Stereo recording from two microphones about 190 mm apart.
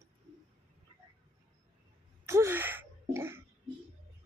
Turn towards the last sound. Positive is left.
turn(degrees=-15)  # may be behind; listen again after turning